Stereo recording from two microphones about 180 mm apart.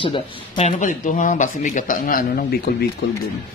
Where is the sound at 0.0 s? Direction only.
30° left (ahead or behind).